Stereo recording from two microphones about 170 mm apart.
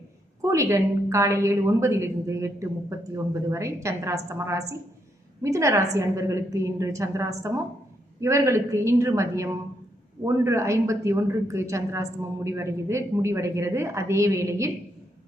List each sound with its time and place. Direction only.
0.4 s a woman's voice: 15° right (ahead or behind)